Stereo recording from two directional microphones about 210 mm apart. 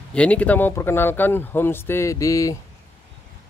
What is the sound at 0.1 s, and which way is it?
Speech, 5° left (ahead or behind).